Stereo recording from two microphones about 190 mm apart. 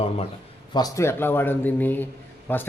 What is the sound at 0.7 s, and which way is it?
Speech, 15° left (ahead or behind).